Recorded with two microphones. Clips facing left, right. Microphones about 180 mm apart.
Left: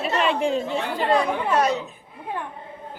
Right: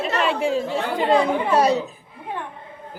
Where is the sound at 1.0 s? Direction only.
20° right (ahead or behind).